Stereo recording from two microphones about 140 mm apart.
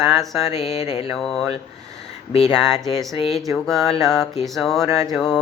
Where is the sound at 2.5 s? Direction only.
5° left (ahead or behind).